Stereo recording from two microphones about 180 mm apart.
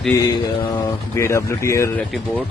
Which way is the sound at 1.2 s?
15° left (ahead or behind).